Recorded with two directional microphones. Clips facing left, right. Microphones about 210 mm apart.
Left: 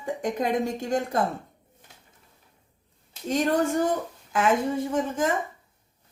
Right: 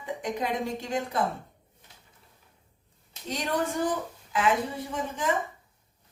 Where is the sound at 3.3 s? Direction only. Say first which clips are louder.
Left 6 dB; 50° left (ahead or behind).